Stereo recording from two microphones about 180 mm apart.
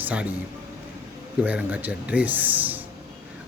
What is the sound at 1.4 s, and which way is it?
Speech, 10° right (ahead or behind).